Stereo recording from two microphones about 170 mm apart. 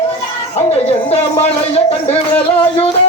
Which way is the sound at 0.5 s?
35° left (ahead or behind).